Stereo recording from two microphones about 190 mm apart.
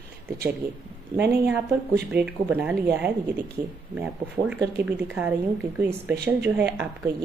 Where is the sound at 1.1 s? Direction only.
60° right (ahead or behind).